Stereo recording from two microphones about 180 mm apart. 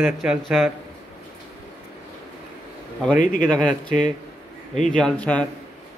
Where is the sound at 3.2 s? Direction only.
45° left (ahead or behind).